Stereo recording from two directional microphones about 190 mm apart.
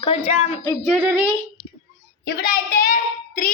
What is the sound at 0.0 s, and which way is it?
Speech, 30° left (ahead or behind).